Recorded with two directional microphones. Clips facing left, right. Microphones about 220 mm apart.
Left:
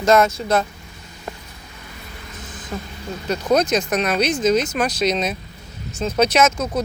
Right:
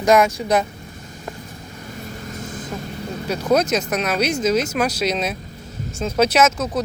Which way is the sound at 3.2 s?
5° right (ahead or behind).